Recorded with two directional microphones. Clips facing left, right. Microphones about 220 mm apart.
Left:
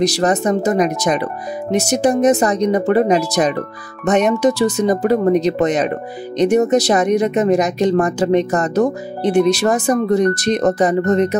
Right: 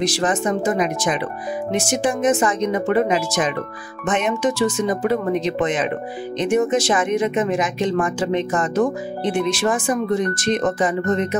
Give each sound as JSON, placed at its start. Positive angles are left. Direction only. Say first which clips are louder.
{"t": 0.0, "sound": "speech", "louder": "left 5 dB", "side_deg": 40}